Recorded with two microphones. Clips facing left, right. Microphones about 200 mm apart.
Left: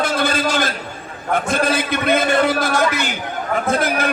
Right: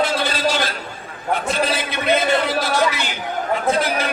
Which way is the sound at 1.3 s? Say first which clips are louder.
Left 2 dB; 50° left (ahead or behind).